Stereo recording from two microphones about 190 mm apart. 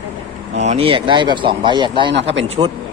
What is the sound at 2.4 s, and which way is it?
Speech, 30° right (ahead or behind).